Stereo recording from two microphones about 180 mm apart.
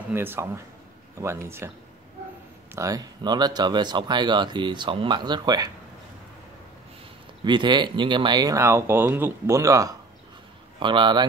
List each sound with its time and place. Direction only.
0.1 s speech: 10° right (ahead or behind)
2.7 s speech: 20° right (ahead or behind)
7.4 s speech: 25° right (ahead or behind)